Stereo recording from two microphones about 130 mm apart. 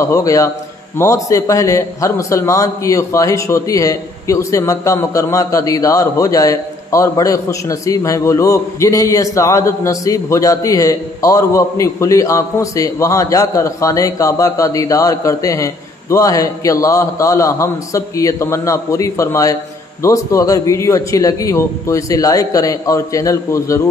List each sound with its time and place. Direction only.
0.0 s a man's voice: 25° left (ahead or behind)